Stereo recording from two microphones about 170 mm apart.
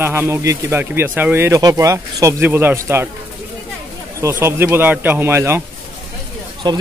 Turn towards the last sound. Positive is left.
turn(degrees=-25)  # may be behind; listen again after turning